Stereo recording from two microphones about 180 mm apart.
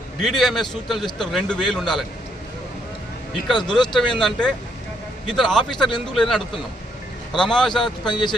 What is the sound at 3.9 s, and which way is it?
A man's voice, 5° left (ahead or behind).